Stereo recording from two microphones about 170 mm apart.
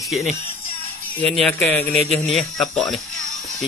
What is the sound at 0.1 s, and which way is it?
Speech, centre (ahead or behind).